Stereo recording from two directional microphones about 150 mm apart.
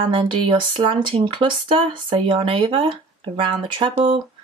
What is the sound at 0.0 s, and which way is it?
Speech, 35° right (ahead or behind).